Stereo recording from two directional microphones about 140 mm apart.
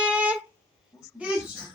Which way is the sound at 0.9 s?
20° left (ahead or behind).